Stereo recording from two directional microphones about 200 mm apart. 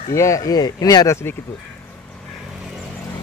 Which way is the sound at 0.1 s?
15° left (ahead or behind).